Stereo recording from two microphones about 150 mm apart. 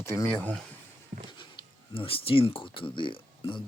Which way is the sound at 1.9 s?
35° left (ahead or behind).